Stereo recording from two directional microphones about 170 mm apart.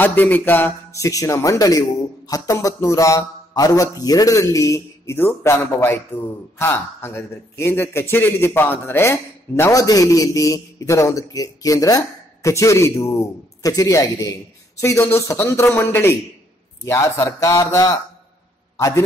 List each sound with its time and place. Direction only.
0.0 s a man's voice: 10° left (ahead or behind)